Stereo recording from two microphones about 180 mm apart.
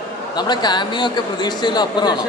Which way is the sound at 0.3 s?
25° left (ahead or behind).